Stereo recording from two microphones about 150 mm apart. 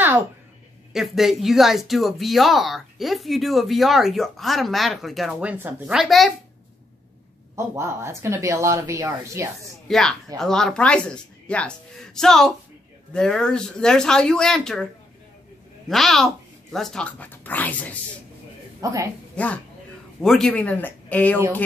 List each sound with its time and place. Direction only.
0.9 s speech: centre (ahead or behind)
7.5 s a woman's voice: 15° right (ahead or behind)
9.8 s speech: centre (ahead or behind)
15.9 s speech: centre (ahead or behind)
18.8 s a woman's voice: 20° right (ahead or behind)
19.3 s speech: 10° left (ahead or behind)